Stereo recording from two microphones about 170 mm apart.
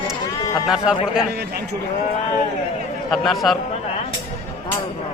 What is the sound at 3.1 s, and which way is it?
Speech, centre (ahead or behind).